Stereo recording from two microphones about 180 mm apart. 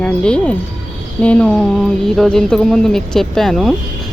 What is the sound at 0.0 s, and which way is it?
Speech, 5° left (ahead or behind).